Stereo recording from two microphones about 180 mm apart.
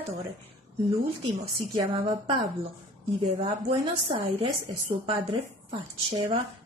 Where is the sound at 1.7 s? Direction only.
20° right (ahead or behind).